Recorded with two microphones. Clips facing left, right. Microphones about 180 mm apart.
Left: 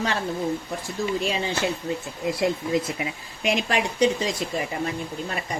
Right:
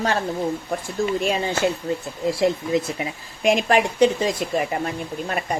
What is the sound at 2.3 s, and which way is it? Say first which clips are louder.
Speech: right 3 dB; 25° right (ahead or behind).